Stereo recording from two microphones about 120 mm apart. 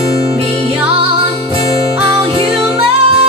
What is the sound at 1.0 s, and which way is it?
Music, 50° right (ahead or behind).